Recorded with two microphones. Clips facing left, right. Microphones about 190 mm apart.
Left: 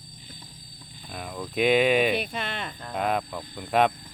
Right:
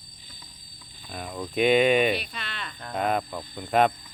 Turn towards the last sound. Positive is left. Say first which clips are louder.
# right 1 dB
turn(degrees=0)  # may be behind; listen again after turning